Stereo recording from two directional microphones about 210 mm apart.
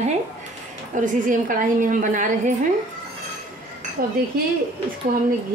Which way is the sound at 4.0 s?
40° right (ahead or behind).